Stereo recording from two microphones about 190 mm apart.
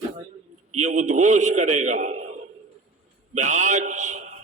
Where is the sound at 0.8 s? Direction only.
40° right (ahead or behind).